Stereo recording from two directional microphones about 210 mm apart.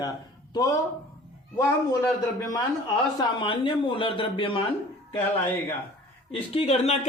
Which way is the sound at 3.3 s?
25° left (ahead or behind).